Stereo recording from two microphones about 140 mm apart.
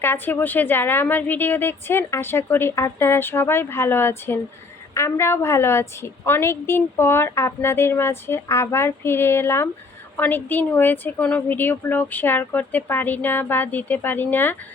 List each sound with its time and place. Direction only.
0.0 s a woman's voice: 15° left (ahead or behind)